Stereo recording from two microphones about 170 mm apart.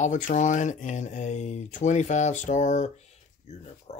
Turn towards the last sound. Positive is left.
turn(degrees=40)  # may be behind; listen again after turning